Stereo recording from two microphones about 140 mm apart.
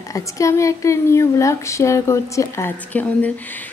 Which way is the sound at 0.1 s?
20° left (ahead or behind).